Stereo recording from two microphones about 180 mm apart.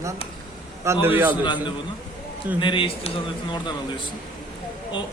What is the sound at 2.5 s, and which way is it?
Speech, 30° left (ahead or behind).